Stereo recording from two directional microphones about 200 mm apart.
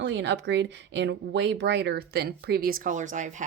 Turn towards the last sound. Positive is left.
turn(degrees=-40)  # may be behind; listen again after turning